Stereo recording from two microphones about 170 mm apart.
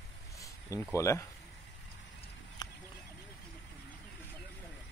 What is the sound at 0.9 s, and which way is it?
Speech, 15° left (ahead or behind).